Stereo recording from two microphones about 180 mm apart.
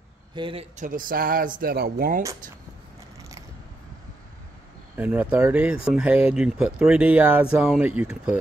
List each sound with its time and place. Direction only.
0.3 s a man's voice: 30° right (ahead or behind)
0.7 s speech: 45° right (ahead or behind)
4.9 s speech: 10° right (ahead or behind)